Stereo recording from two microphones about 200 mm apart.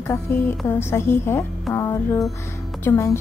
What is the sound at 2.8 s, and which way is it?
Speech, 10° left (ahead or behind).